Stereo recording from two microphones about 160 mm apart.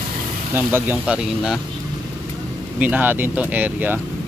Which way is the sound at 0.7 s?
15° right (ahead or behind).